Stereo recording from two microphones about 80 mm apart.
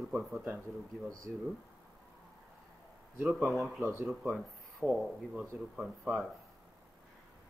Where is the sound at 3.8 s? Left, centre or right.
Right.